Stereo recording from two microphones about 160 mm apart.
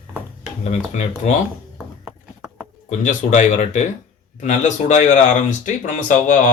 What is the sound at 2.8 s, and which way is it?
Speech, 50° left (ahead or behind).